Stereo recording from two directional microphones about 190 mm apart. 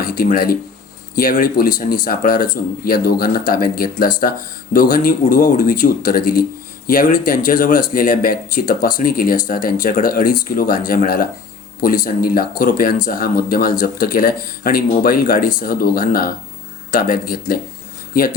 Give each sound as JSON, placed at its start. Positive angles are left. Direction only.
{"t": 0.1, "sound": "speech", "side_deg": 50}